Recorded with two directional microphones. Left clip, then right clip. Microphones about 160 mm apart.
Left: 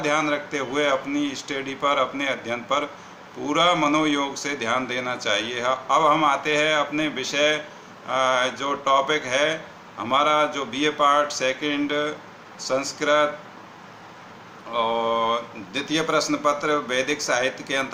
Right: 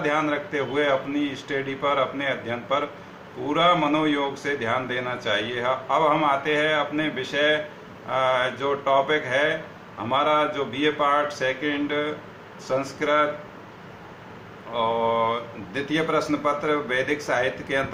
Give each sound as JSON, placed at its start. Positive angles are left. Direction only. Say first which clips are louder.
{"t": 0.1, "sound": "a man's voice", "louder": "left 1 dB", "side_deg": 30}
{"t": 3.7, "sound": "speech", "louder": "right 2 dB", "side_deg": 15}
{"t": 3.9, "sound": "a man's voice", "louder": "left 1 dB", "side_deg": 25}
{"t": 14.7, "sound": "a man's voice", "louder": "even", "side_deg": 20}